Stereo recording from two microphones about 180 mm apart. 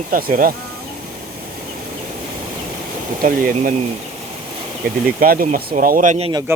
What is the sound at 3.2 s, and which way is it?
Speech, 50° right (ahead or behind).